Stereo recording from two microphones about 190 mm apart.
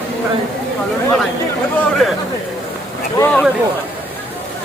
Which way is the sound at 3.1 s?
10° left (ahead or behind).